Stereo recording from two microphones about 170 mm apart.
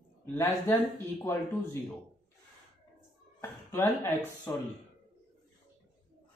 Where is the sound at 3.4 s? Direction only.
15° left (ahead or behind).